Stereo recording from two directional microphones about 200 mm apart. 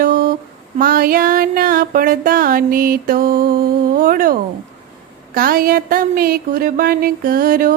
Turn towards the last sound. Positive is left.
turn(degrees=-45)  # may be behind; listen again after turning